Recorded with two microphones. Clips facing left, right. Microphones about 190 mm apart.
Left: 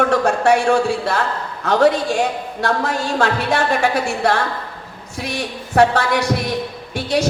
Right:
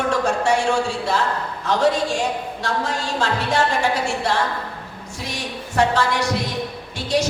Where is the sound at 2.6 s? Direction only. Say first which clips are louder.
Left 7 dB; 60° left (ahead or behind).